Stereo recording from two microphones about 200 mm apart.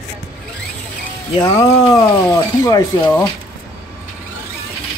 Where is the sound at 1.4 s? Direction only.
20° left (ahead or behind).